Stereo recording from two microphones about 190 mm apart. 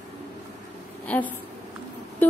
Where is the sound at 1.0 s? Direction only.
10° left (ahead or behind).